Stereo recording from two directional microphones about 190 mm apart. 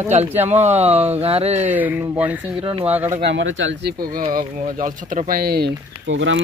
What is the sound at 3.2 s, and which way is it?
Speech, 80° right.